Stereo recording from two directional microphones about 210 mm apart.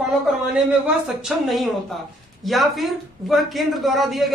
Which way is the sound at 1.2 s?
Centre (ahead or behind).